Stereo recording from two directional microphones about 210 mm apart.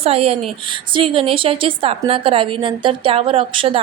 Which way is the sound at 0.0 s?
30° right (ahead or behind).